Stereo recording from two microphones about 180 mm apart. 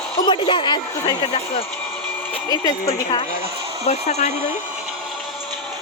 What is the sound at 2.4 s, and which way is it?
Speech, 20° left (ahead or behind).